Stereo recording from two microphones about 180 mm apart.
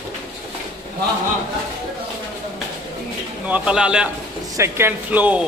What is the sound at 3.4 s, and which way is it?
A man's voice, 5° right (ahead or behind).